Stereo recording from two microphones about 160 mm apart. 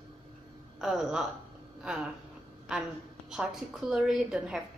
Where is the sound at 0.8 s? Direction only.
5° right (ahead or behind).